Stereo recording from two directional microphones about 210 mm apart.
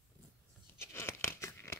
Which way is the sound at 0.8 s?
10° left (ahead or behind).